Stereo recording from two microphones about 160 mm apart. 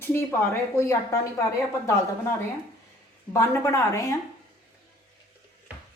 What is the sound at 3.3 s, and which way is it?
Speech, 20° left (ahead or behind).